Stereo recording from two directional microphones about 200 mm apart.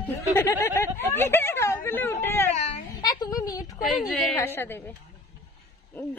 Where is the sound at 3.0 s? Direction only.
20° left (ahead or behind).